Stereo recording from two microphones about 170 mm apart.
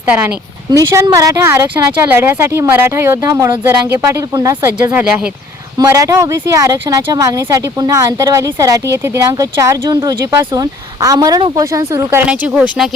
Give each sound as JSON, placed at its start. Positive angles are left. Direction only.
{"t": 0.7, "sound": "speech", "side_deg": -20}